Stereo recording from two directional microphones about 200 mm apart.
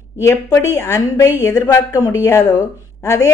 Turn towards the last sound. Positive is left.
turn(degrees=15)  # may be behind; listen again after turning